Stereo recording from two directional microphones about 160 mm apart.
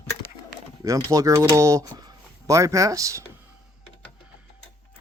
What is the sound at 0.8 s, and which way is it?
Speech, 20° right (ahead or behind).